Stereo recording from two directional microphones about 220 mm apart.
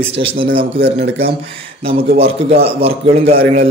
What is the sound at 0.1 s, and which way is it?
Speech, 25° right (ahead or behind).